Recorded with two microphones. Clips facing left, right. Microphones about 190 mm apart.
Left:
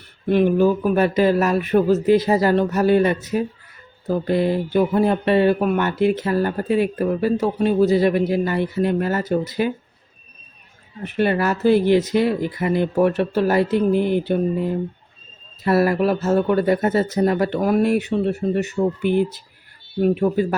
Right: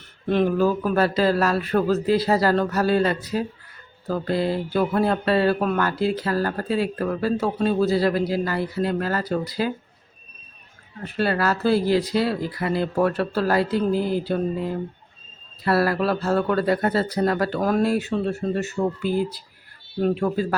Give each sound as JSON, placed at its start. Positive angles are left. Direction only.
{"t": 0.4, "sound": "speech", "side_deg": 20}
{"t": 11.0, "sound": "speech", "side_deg": 20}
{"t": 15.6, "sound": "speech", "side_deg": 20}
{"t": 20.0, "sound": "speech", "side_deg": 20}